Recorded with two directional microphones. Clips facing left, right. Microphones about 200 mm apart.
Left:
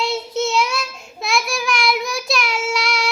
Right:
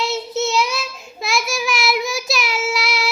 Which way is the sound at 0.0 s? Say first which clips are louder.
Even; centre (ahead or behind).